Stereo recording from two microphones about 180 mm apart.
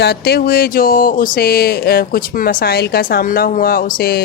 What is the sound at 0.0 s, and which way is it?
Speech, 65° left (ahead or behind).